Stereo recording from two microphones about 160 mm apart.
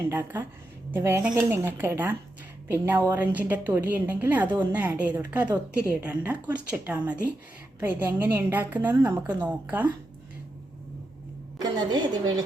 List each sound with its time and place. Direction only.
0.1 s a woman's voice: 15° right (ahead or behind)
11.6 s a woman's voice: 25° right (ahead or behind)